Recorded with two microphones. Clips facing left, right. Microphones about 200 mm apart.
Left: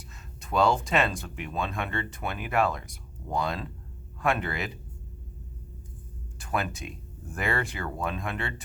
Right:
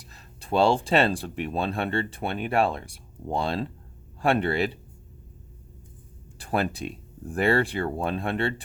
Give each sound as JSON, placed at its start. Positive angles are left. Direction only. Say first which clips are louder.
{"t": 0.1, "sound": "speech", "louder": "right 4 dB", "side_deg": -30}
{"t": 6.4, "sound": "speech", "louder": "right 4 dB", "side_deg": -35}